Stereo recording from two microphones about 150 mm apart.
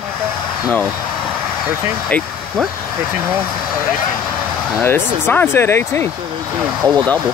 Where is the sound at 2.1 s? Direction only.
10° left (ahead or behind).